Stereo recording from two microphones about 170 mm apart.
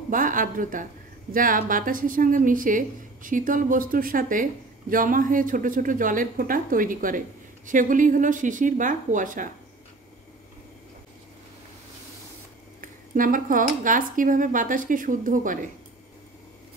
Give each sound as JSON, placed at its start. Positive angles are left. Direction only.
{"t": 0.1, "sound": "a woman's voice", "side_deg": -50}
{"t": 12.8, "sound": "a woman's voice", "side_deg": -50}